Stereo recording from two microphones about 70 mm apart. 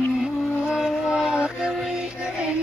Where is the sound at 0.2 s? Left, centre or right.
Centre.